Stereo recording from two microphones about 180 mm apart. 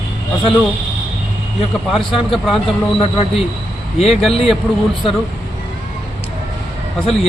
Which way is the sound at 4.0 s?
Centre (ahead or behind).